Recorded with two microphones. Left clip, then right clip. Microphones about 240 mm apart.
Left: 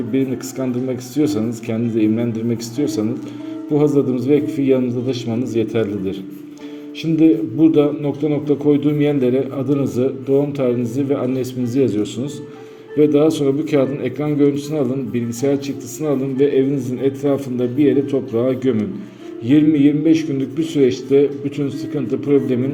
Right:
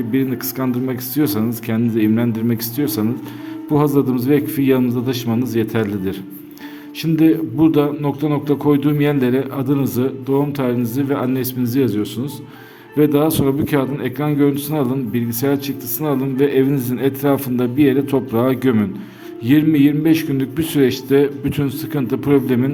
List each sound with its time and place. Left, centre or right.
0.1 s a man's voice: right